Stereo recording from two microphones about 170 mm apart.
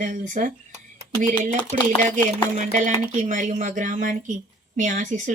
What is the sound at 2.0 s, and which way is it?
Speech, 50° right (ahead or behind).